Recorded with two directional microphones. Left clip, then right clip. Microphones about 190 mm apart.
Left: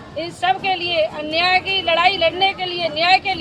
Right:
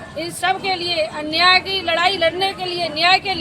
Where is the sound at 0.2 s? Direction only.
5° right (ahead or behind).